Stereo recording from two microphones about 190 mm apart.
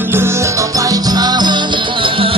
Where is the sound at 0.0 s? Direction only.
10° right (ahead or behind).